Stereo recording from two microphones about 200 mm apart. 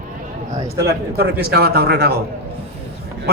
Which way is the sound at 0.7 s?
50° right (ahead or behind).